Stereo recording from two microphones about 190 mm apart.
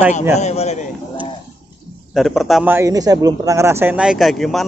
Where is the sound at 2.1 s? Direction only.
Centre (ahead or behind).